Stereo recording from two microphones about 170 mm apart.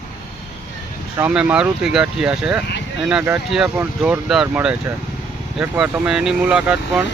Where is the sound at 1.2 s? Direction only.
5° right (ahead or behind).